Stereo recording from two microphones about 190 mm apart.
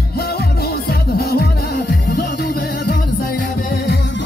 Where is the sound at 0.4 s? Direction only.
55° left (ahead or behind).